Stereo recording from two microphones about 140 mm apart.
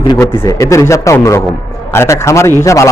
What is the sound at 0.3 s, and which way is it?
A man's voice, 20° left (ahead or behind).